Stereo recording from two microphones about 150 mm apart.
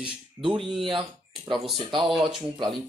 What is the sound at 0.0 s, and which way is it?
Speech, 35° right (ahead or behind).